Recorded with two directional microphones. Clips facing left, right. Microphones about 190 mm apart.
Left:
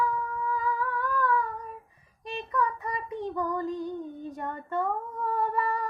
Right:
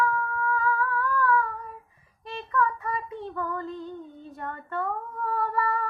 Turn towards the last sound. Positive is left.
turn(degrees=15)  # may be behind; listen again after turning